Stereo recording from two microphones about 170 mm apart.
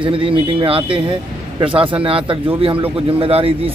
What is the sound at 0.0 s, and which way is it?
A man's voice, 30° right (ahead or behind).